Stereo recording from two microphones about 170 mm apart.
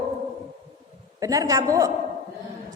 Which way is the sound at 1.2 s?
20° right (ahead or behind).